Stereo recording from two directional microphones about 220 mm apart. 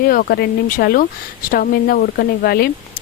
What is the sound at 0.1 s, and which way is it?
Speech, 40° left (ahead or behind).